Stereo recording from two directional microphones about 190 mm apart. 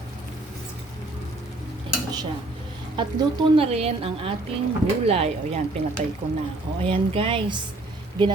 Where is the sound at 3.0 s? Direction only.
25° right (ahead or behind).